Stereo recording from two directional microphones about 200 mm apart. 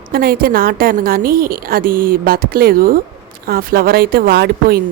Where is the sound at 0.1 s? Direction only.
50° right (ahead or behind).